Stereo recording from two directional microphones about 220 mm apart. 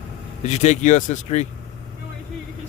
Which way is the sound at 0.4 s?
30° left (ahead or behind).